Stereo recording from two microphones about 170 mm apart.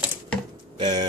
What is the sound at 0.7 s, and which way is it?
Pigeon, 25° right (ahead or behind).